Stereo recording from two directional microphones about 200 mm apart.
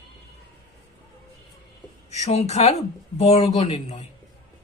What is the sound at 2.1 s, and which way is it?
Speech, 35° left (ahead or behind).